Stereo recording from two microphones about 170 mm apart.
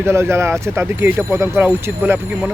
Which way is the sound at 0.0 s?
15° right (ahead or behind).